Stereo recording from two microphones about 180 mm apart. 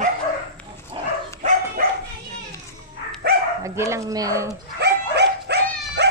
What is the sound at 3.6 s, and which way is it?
Speech, 15° right (ahead or behind).